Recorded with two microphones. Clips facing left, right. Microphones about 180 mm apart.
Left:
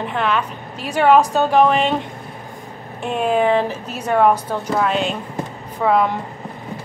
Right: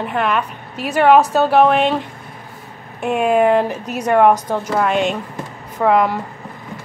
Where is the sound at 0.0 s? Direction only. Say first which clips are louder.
Right 1 dB; 5° right (ahead or behind).